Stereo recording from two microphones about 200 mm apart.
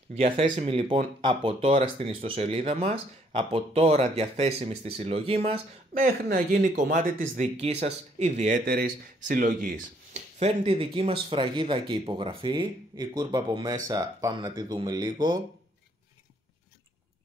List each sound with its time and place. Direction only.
0.1 s speech: 30° right (ahead or behind)